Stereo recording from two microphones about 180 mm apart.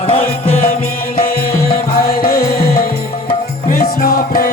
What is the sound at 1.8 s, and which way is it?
Music, 55° left (ahead or behind).